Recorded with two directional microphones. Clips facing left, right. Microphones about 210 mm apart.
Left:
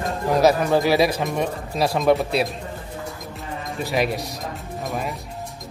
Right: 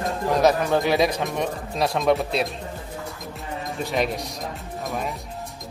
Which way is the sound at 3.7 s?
5° left (ahead or behind).